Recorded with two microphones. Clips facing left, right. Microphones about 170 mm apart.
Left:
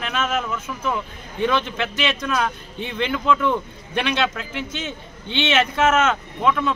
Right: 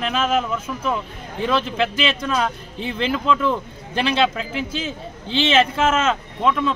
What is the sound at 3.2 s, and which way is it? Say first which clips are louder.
Speech: left 1 dB; 5° left (ahead or behind).